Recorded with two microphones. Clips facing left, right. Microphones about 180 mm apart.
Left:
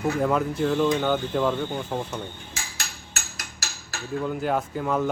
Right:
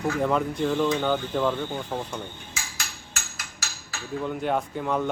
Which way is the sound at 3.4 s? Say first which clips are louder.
Left 1 dB; 40° left (ahead or behind).